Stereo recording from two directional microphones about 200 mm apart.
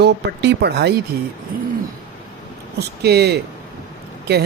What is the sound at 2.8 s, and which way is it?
Speech, 55° right (ahead or behind).